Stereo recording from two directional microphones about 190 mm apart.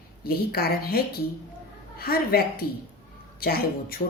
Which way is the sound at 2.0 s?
50° left (ahead or behind).